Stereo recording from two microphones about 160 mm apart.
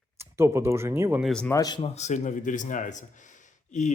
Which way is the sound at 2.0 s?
45° left (ahead or behind).